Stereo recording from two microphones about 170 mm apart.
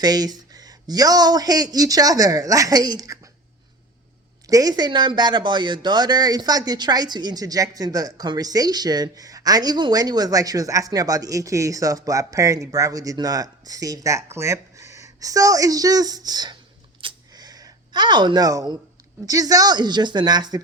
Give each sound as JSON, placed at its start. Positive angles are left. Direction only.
{"t": 0.0, "sound": "speech", "side_deg": -25}
{"t": 4.4, "sound": "speech", "side_deg": -20}
{"t": 17.0, "sound": "a sound", "side_deg": -25}
{"t": 19.2, "sound": "speech", "side_deg": -20}